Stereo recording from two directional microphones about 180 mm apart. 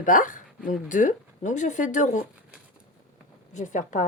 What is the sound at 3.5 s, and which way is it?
Speech, 45° left (ahead or behind).